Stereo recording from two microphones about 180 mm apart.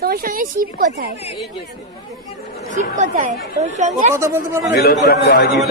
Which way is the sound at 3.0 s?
40° right (ahead or behind).